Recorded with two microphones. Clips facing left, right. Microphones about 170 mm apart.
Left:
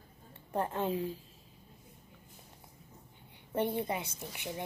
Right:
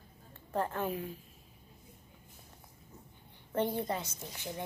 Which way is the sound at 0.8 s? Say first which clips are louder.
Left 3 dB; 30° left (ahead or behind).